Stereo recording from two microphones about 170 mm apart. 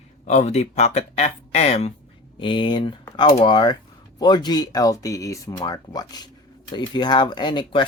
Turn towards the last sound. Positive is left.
turn(degrees=25)  # may be behind; listen again after turning